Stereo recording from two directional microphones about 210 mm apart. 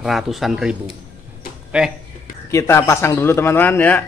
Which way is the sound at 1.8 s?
5° right (ahead or behind).